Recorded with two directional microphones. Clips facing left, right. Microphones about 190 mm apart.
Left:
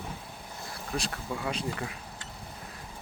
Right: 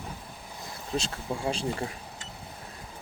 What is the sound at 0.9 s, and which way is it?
Speech, 25° right (ahead or behind).